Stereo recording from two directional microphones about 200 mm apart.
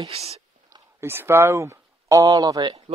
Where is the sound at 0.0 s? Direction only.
30° right (ahead or behind).